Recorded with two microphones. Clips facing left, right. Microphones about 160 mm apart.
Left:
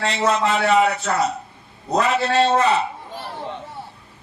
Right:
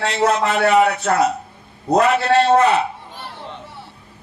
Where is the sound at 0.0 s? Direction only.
55° right (ahead or behind).